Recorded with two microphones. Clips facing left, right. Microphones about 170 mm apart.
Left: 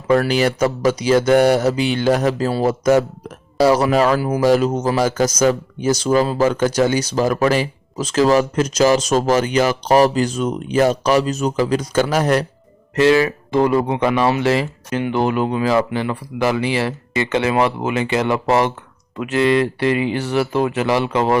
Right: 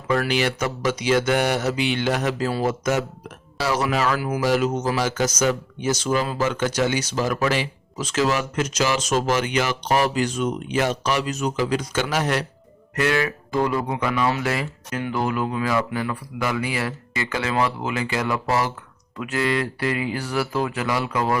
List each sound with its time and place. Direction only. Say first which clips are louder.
0.2 s speech: left 6 dB; 40° left (ahead or behind)
13.0 s speech: left 8 dB; 25° left (ahead or behind)